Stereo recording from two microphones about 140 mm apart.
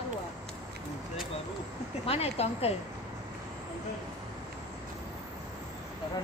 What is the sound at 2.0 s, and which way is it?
Speech, 45° left (ahead or behind).